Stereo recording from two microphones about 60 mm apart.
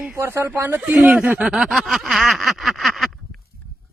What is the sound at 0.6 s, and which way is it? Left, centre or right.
Speech, right.